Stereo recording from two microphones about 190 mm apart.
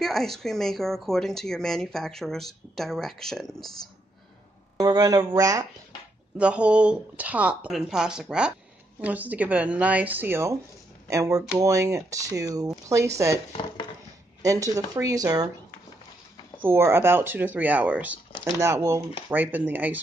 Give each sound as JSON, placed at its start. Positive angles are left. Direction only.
{"t": 0.0, "sound": "speech", "side_deg": 0}
{"t": 4.7, "sound": "speech", "side_deg": -20}
{"t": 6.3, "sound": "speech", "side_deg": -5}
{"t": 14.4, "sound": "speech", "side_deg": -15}
{"t": 16.6, "sound": "speech", "side_deg": -15}